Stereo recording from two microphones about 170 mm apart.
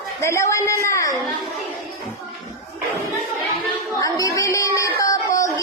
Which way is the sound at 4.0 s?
20° left (ahead or behind).